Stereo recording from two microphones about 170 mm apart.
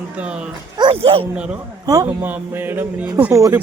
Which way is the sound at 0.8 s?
30° right (ahead or behind).